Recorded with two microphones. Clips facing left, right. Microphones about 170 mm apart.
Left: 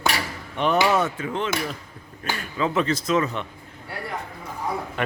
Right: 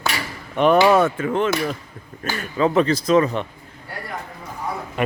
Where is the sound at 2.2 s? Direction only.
45° right (ahead or behind).